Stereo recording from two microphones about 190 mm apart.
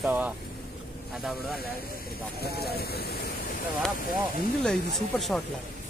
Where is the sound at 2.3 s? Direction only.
55° left (ahead or behind).